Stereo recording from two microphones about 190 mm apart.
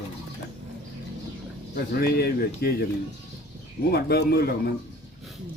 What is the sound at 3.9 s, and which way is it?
Speech, 55° left (ahead or behind).